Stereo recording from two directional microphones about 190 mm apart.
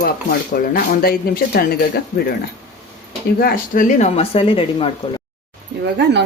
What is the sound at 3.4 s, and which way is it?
Speech, 50° left (ahead or behind).